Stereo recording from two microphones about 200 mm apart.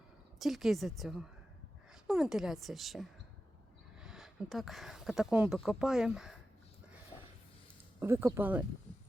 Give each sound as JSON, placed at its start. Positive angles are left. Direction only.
{"t": 0.3, "sound": "speech", "side_deg": 0}
{"t": 7.1, "sound": "a sound", "side_deg": 25}
{"t": 7.9, "sound": "speech", "side_deg": -15}